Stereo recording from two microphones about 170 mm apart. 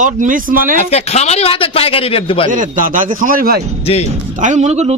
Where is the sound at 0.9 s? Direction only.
40° left (ahead or behind).